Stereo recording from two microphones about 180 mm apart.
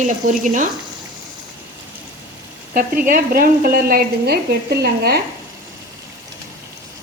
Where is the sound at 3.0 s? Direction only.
55° right (ahead or behind).